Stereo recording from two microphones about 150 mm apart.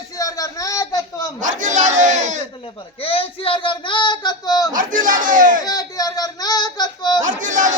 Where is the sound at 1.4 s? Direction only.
55° right (ahead or behind).